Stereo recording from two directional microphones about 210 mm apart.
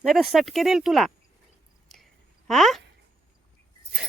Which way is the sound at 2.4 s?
Centre (ahead or behind).